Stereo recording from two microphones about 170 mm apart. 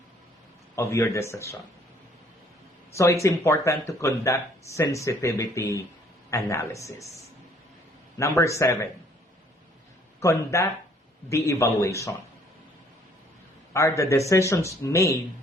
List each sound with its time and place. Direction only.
0.8 s speech: 15° left (ahead or behind)
2.9 s speech: 15° left (ahead or behind)
8.2 s speech: 15° left (ahead or behind)
10.2 s speech: 15° left (ahead or behind)
13.7 s speech: 15° left (ahead or behind)